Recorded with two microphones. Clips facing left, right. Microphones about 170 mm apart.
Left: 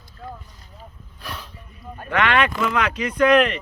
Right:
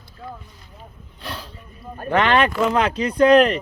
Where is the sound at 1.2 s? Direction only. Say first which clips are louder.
Right 2 dB; 30° right (ahead or behind).